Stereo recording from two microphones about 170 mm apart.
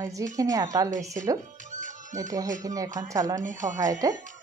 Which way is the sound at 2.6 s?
20° right (ahead or behind).